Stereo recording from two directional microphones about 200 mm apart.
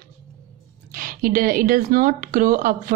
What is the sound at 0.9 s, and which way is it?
Speech, 45° right (ahead or behind).